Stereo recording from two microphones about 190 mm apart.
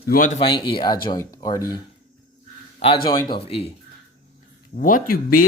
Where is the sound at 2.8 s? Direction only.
25° left (ahead or behind).